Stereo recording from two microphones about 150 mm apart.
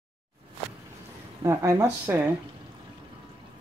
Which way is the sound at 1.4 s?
20° right (ahead or behind).